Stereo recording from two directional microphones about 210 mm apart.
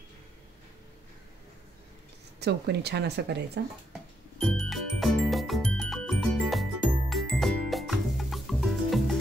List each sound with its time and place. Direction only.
2.4 s speech: 50° right (ahead or behind)
4.4 s music: centre (ahead or behind)